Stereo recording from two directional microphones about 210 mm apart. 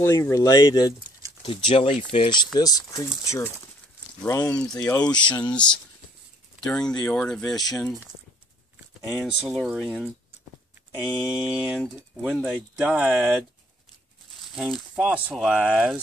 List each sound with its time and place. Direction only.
0.0 s speech: 15° left (ahead or behind)
6.6 s speech: 5° left (ahead or behind)
9.2 s speech: centre (ahead or behind)
11.3 s speech: centre (ahead or behind)
14.5 s speech: centre (ahead or behind)